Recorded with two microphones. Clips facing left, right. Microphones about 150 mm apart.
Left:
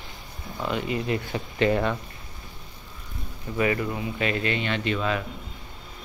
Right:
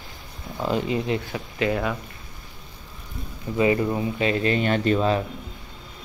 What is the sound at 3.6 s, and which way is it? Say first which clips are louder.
Speech: right 4 dB; 25° right (ahead or behind).